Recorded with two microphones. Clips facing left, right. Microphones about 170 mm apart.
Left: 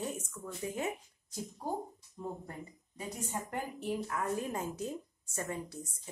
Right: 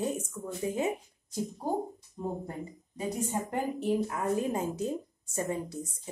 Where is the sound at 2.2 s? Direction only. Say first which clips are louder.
Right 6 dB; 30° right (ahead or behind).